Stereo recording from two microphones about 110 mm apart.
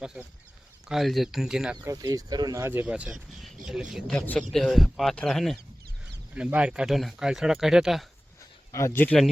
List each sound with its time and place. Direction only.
0.0 s speech: 5° right (ahead or behind)
1.8 s speech: 30° right (ahead or behind)
2.8 s speech: 10° right (ahead or behind)
4.1 s speech: 5° left (ahead or behind)
6.3 s speech: 10° right (ahead or behind)
8.7 s speech: 25° left (ahead or behind)